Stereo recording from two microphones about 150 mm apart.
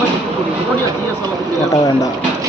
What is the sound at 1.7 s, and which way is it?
Speech, 25° left (ahead or behind).